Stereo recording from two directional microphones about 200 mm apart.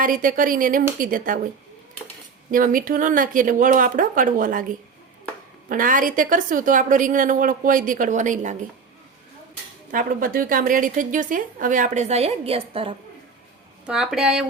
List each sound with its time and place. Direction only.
0.0 s a woman's voice: 45° right (ahead or behind)
2.5 s a woman's voice: 45° right (ahead or behind)
5.6 s a woman's voice: 45° right (ahead or behind)
9.9 s a woman's voice: 45° right (ahead or behind); by 12.9 s 30° right (ahead or behind)
13.8 s a woman's voice: 5° right (ahead or behind)